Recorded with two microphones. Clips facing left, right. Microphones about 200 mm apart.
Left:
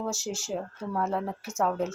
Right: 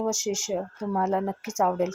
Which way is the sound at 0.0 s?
15° right (ahead or behind).